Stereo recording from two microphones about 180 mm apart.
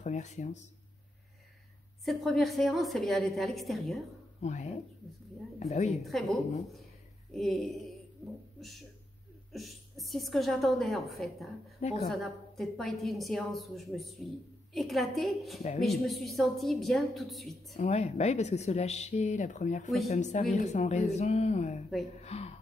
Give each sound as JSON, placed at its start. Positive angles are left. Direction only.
{"t": 0.0, "sound": "speech", "side_deg": 40}
{"t": 2.0, "sound": "a woman's voice", "side_deg": 0}
{"t": 4.4, "sound": "speech", "side_deg": 40}
{"t": 6.0, "sound": "a woman's voice", "side_deg": 0}
{"t": 9.5, "sound": "a woman's voice", "side_deg": 0}
{"t": 11.8, "sound": "speech", "side_deg": 35}
{"t": 12.1, "sound": "a woman's voice", "side_deg": 0}
{"t": 17.7, "sound": "speech", "side_deg": 35}